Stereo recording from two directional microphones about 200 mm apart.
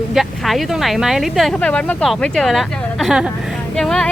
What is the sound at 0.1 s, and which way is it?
Speech, centre (ahead or behind).